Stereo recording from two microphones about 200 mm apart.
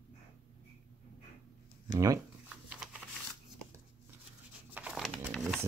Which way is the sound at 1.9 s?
15° right (ahead or behind).